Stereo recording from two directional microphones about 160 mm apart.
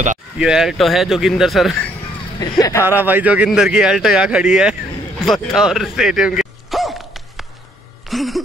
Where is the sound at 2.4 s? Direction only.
20° left (ahead or behind).